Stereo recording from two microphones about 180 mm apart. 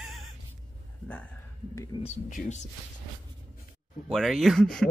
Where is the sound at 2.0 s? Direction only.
40° left (ahead or behind).